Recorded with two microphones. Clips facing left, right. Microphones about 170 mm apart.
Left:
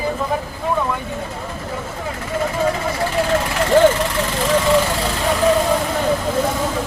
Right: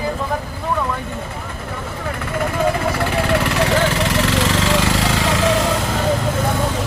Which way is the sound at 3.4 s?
70° right (ahead or behind).